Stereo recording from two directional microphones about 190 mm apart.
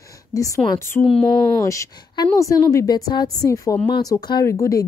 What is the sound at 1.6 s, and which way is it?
A woman's voice, 15° left (ahead or behind).